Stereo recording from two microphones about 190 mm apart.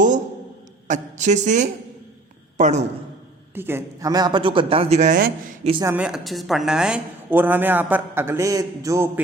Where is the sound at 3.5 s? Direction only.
10° right (ahead or behind); by 5.7 s 40° right (ahead or behind).